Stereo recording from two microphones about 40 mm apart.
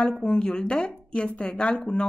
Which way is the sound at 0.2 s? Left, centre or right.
Left.